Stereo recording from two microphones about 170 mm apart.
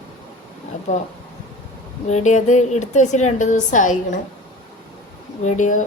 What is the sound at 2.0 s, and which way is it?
Speech, 45° left (ahead or behind).